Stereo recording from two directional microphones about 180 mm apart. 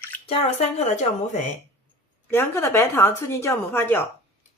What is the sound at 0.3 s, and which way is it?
Speech, 35° left (ahead or behind).